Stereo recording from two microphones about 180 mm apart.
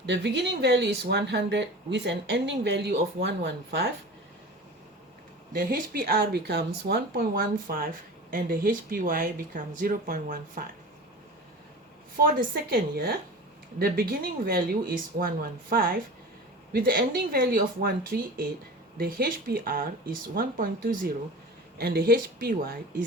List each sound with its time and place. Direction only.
0.0 s speech: 70° right (ahead or behind)
5.5 s speech: 50° right (ahead or behind)
12.2 s speech: 50° right (ahead or behind)